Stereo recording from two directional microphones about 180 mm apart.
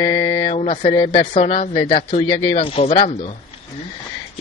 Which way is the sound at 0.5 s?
40° left (ahead or behind).